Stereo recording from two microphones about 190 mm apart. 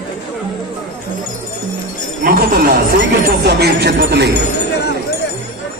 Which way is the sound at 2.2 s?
50° right (ahead or behind).